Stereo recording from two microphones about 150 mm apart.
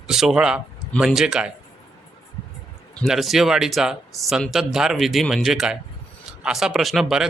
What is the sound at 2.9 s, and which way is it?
A man's voice, centre (ahead or behind).